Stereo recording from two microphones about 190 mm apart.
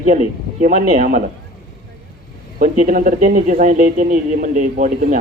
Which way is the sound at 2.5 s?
50° right (ahead or behind).